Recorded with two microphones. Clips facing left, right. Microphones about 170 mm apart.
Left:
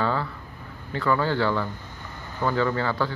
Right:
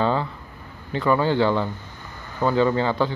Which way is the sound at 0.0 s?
20° right (ahead or behind).